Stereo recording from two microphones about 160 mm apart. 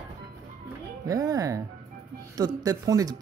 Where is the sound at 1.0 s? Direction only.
20° right (ahead or behind).